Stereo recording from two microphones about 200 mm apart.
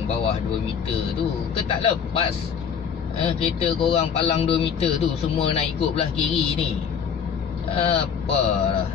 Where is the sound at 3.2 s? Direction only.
30° left (ahead or behind).